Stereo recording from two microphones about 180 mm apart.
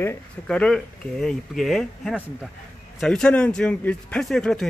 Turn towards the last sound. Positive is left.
turn(degrees=5)  # may be behind; listen again after turning